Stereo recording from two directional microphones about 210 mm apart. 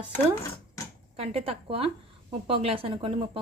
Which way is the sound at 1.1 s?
30° right (ahead or behind).